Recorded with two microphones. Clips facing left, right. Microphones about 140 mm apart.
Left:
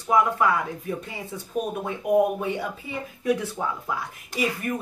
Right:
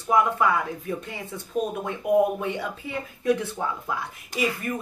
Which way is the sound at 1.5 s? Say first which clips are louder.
Right 1 dB; 10° left (ahead or behind).